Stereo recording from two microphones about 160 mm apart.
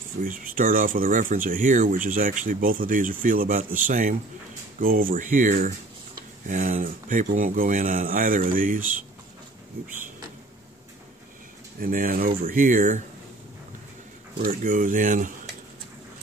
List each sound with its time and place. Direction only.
0.2 s speech: 60° right (ahead or behind)
11.8 s speech: 60° right (ahead or behind)
14.4 s speech: 55° right (ahead or behind)